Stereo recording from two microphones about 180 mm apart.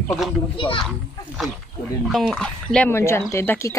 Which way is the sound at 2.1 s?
Centre (ahead or behind).